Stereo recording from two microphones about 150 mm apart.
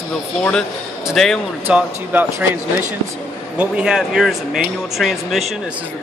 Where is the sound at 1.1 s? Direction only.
Centre (ahead or behind).